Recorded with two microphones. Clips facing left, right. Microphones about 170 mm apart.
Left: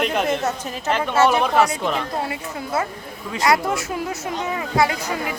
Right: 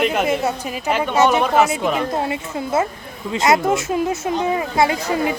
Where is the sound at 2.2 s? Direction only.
25° right (ahead or behind).